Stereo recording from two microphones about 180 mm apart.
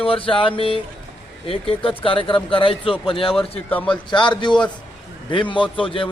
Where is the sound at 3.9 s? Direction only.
25° left (ahead or behind).